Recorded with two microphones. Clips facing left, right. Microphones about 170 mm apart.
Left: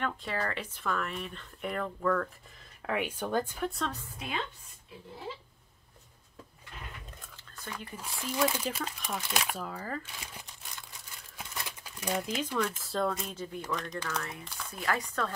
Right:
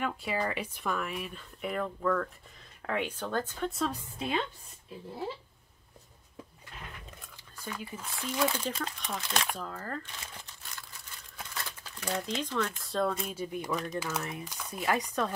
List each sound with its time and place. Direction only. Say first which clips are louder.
0.0 s speech: right 2 dB; 10° right (ahead or behind)
2.9 s speech: left 1 dB; 10° left (ahead or behind)
3.6 s a woman's voice: right 2 dB; centre (ahead or behind)
7.5 s speech: right 2 dB; 10° right (ahead or behind)
8.0 s speech: left 1 dB; 10° left (ahead or behind)
11.3 s speech: even; 15° left (ahead or behind); by 13.7 s 15° right (ahead or behind)
13.7 s a woman's voice: right 1 dB; 5° right (ahead or behind)